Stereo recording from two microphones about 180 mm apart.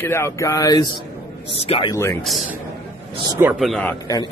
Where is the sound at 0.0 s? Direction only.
15° left (ahead or behind).